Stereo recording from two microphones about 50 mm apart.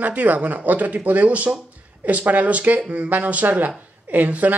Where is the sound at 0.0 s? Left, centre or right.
Right.